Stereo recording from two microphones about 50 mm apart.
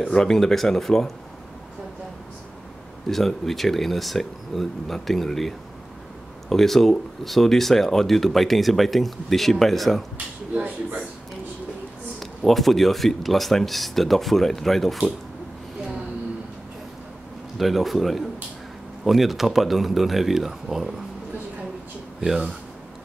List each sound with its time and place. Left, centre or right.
0.0 s speech: centre
3.1 s speech: centre
6.5 s speech: centre
10.1 s speech: right
12.2 s speech: centre
17.6 s speech: centre